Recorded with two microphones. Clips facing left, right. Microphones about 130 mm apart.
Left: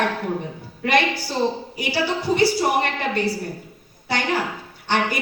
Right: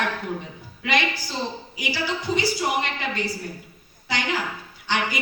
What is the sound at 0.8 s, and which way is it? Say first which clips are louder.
A woman's voice: left 5 dB; 55° left (ahead or behind).